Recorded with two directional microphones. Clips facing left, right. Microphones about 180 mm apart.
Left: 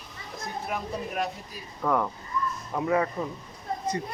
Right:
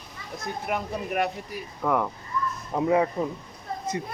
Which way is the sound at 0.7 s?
65° right (ahead or behind).